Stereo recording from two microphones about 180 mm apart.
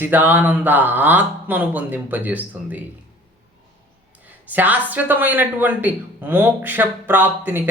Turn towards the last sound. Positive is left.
turn(degrees=-10)  # may be behind; listen again after turning